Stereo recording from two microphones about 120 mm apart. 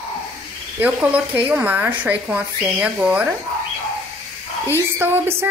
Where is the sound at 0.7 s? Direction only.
15° right (ahead or behind).